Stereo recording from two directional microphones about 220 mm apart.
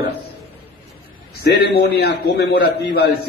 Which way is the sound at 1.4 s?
50° left (ahead or behind).